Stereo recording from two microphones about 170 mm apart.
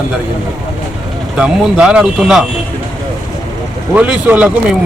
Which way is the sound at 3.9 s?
10° right (ahead or behind).